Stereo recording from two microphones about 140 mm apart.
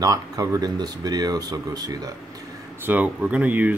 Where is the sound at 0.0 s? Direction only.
25° right (ahead or behind).